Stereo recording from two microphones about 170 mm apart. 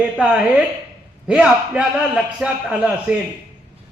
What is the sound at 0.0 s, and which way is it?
A man's voice, 5° right (ahead or behind).